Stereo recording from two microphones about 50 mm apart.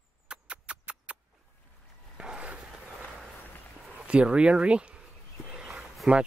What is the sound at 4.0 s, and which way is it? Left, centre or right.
Speech, right.